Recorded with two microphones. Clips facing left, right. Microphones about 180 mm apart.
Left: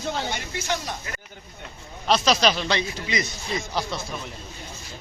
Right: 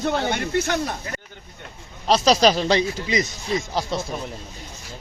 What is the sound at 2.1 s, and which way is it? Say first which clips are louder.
Speech: right 4 dB; 40° right (ahead or behind).